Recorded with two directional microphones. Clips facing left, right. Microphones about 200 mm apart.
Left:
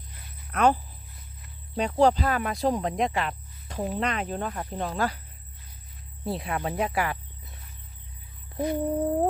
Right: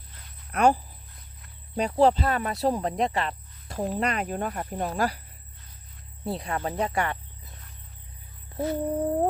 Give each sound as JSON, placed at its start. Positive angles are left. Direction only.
{"t": 0.5, "sound": "speech", "side_deg": -10}
{"t": 3.9, "sound": "speech", "side_deg": -10}
{"t": 6.2, "sound": "speech", "side_deg": 0}
{"t": 8.5, "sound": "a sound", "side_deg": 15}